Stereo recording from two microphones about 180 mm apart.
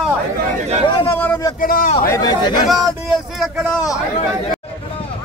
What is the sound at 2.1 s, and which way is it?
Speech, 20° left (ahead or behind).